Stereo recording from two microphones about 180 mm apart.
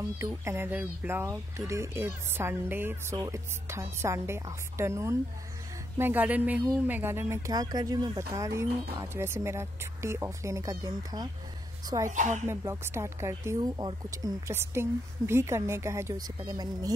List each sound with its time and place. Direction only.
0.0 s speech: 15° right (ahead or behind)
12.1 s speech: 40° right (ahead or behind)
12.4 s speech: 15° right (ahead or behind)